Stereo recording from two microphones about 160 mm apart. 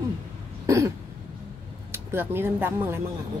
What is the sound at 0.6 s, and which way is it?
Throat clearing, 20° right (ahead or behind).